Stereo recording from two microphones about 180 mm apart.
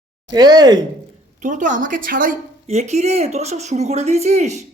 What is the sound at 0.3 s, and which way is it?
Speech, 20° right (ahead or behind).